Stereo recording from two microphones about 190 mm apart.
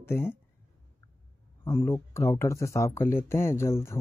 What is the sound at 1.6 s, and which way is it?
Speech, 10° left (ahead or behind).